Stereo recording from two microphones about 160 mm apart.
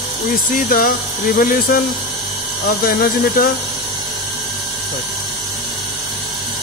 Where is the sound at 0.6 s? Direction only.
60° left (ahead or behind).